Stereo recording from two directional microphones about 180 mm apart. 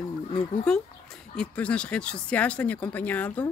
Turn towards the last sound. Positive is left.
turn(degrees=10)  # may be behind; listen again after turning